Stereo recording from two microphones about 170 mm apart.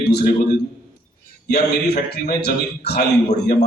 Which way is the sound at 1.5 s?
75° left (ahead or behind).